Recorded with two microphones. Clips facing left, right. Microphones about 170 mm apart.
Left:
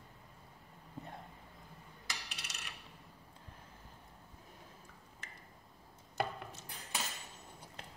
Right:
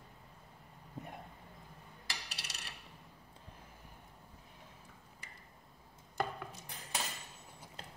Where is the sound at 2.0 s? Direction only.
35° right (ahead or behind).